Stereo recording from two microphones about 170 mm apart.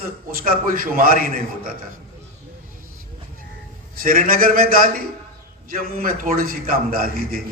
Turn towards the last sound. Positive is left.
turn(degrees=-60)  # may be behind; listen again after turning